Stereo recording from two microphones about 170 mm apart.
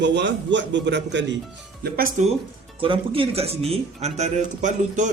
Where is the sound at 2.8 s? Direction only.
30° right (ahead or behind).